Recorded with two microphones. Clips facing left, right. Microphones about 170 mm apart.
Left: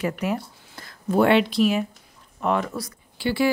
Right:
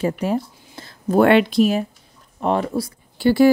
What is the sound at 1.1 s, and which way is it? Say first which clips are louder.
A woman's voice: right 4 dB; 50° right (ahead or behind).